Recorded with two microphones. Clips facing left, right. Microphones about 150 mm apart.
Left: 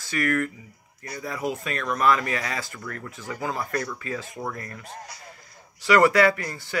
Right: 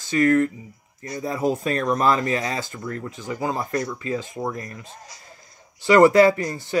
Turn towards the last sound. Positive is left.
turn(degrees=-20)  # may be behind; listen again after turning